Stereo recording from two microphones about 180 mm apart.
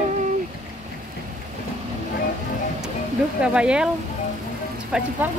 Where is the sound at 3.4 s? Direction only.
5° right (ahead or behind).